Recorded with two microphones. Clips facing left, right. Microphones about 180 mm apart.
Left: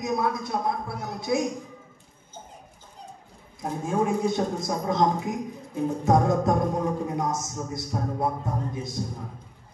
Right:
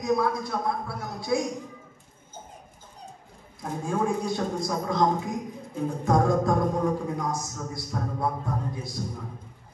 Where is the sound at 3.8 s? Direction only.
20° left (ahead or behind).